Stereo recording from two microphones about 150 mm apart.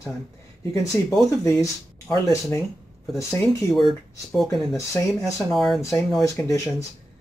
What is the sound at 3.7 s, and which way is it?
Speech, centre (ahead or behind).